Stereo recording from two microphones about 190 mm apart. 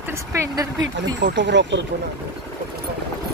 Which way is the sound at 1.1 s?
70° right (ahead or behind).